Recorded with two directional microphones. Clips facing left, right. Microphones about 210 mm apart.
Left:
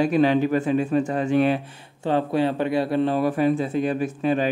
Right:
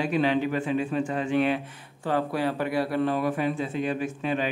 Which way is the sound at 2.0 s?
25° left (ahead or behind).